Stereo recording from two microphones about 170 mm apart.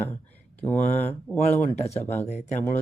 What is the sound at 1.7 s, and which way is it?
Speech, 40° left (ahead or behind).